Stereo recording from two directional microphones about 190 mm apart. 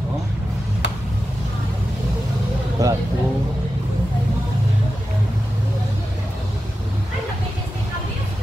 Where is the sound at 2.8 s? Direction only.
15° right (ahead or behind).